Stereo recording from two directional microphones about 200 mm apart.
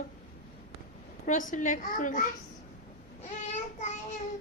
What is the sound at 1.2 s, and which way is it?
A man's voice, 40° left (ahead or behind).